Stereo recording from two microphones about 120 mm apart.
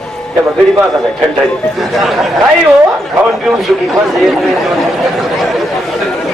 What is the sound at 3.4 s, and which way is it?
Speech, centre (ahead or behind).